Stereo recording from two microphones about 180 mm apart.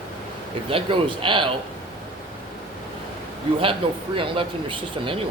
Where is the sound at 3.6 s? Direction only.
30° right (ahead or behind).